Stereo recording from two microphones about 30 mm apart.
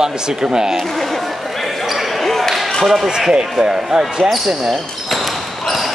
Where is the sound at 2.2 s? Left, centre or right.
Centre.